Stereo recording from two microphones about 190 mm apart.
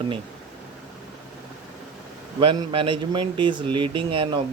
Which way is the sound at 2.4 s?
25° right (ahead or behind).